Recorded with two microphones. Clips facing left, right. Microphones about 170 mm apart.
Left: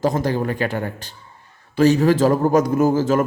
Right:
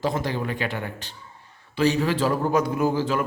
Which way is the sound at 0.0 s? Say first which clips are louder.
Left 6 dB; 40° left (ahead or behind).